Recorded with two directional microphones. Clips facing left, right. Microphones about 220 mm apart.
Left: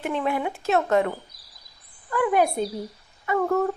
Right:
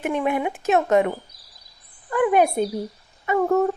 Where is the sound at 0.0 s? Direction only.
15° right (ahead or behind).